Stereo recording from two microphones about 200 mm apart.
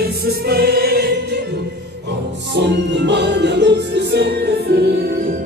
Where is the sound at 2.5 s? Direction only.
60° right (ahead or behind).